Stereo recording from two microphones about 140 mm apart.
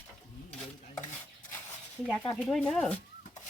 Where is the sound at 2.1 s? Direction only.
5° left (ahead or behind).